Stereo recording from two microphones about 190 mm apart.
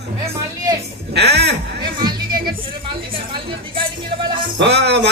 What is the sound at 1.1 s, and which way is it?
Speech, 60° right (ahead or behind).